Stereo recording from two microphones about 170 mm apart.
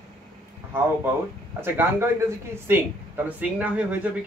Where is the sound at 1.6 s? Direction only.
15° right (ahead or behind).